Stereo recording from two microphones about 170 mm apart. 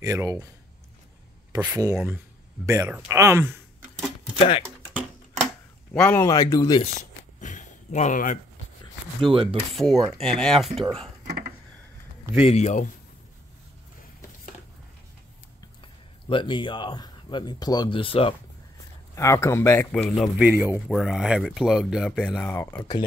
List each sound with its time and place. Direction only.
0.0 s speech: 20° right (ahead or behind)
1.5 s speech: 20° right (ahead or behind)
5.9 s a man's voice: 10° left (ahead or behind)
6.2 s speech: 20° left (ahead or behind)
6.8 s a sound: 45° left (ahead or behind)
9.2 s speech: 30° right (ahead or behind)
9.7 s speech: centre (ahead or behind)
12.4 s speech: 40° left (ahead or behind)
16.3 s speech: 30° left (ahead or behind)
19.1 s a man's voice: 15° left (ahead or behind)
22.5 s a man's voice: 15° left (ahead or behind)